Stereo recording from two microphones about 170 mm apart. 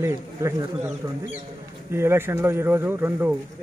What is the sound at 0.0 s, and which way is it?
Speech, 20° right (ahead or behind).